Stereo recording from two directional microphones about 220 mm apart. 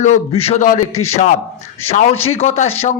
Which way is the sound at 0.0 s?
30° left (ahead or behind).